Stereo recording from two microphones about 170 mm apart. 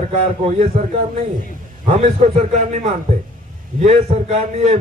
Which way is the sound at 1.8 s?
45° right (ahead or behind).